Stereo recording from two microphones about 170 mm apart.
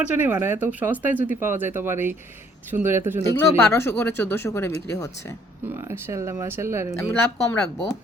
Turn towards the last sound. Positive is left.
turn(degrees=10)  # may be behind; listen again after turning